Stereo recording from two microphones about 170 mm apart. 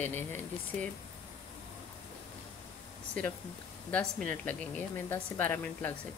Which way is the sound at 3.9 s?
5° left (ahead or behind).